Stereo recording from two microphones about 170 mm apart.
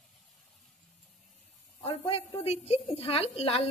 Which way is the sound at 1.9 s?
35° left (ahead or behind).